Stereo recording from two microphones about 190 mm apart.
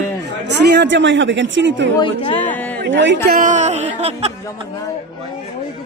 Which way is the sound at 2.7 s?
70° right (ahead or behind).